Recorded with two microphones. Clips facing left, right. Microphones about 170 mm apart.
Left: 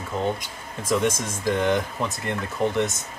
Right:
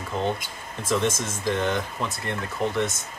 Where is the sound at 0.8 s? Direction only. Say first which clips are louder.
Left 2 dB; 10° left (ahead or behind).